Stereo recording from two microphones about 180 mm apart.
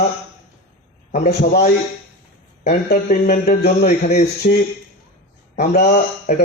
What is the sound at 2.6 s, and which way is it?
Speech, 45° left (ahead or behind).